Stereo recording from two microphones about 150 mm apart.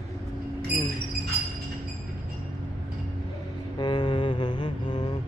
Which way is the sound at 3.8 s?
30° left (ahead or behind).